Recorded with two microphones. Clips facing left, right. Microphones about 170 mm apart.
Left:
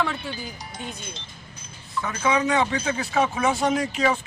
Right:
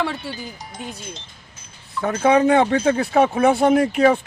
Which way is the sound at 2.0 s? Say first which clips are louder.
Right 7 dB; 55° right (ahead or behind).